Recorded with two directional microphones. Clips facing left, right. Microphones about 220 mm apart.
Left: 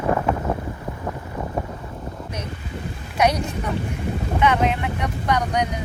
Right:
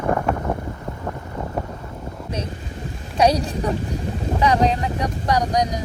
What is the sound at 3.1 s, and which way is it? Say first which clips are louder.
Speech: right 3 dB; 30° right (ahead or behind).